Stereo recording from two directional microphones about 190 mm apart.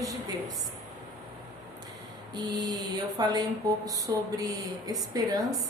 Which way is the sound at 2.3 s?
20° right (ahead or behind).